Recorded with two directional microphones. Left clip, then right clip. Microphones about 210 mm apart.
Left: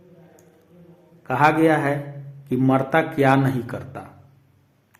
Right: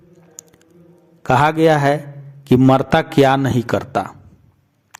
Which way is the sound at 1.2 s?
40° right (ahead or behind).